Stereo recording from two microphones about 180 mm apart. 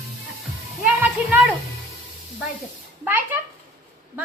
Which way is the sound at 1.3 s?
5° right (ahead or behind).